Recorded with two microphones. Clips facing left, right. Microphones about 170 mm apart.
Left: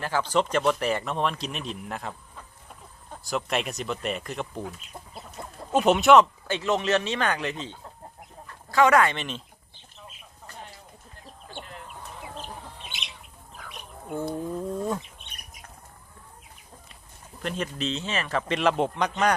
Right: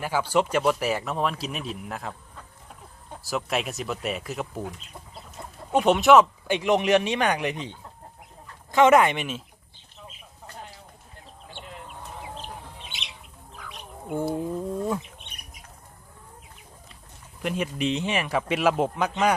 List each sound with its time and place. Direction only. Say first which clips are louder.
0.0 s speech: right 1 dB; 10° right (ahead or behind)
3.2 s speech: even; centre (ahead or behind)
5.7 s speech: right 1 dB; centre (ahead or behind)
6.5 s a man's voice: right 4 dB; 15° right (ahead or behind)
14.1 s a man's voice: right 3 dB; 10° right (ahead or behind)
17.4 s a man's voice: right 3 dB; 10° right (ahead or behind)